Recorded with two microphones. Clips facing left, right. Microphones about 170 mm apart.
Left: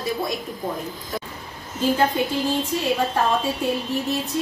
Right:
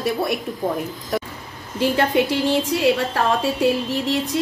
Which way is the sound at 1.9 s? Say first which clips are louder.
Right 2 dB; 85° right.